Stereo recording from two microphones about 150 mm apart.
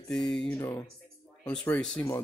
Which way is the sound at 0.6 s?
15° left (ahead or behind).